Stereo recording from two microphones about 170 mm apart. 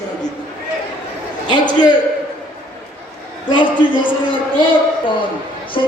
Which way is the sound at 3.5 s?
30° left (ahead or behind).